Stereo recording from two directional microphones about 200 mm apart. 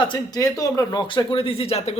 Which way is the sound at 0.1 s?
15° left (ahead or behind).